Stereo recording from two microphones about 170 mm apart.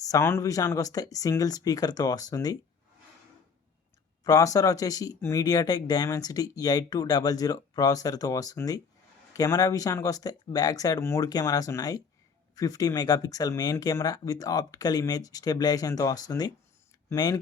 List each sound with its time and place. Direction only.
0.1 s speech: 15° left (ahead or behind)
4.2 s speech: 20° left (ahead or behind)